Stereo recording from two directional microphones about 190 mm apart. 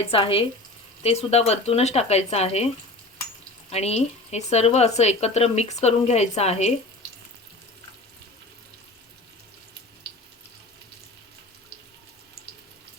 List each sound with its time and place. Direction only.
0.0 s speech: 30° left (ahead or behind)
3.7 s speech: 35° left (ahead or behind)